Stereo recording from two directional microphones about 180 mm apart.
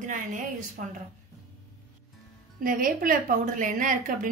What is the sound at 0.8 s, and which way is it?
Speech, 50° right (ahead or behind).